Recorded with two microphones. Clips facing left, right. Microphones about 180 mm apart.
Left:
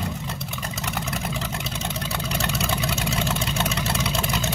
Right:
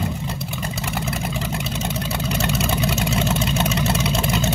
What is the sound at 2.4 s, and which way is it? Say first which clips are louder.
Vehicle: right 4 dB; 20° right (ahead or behind).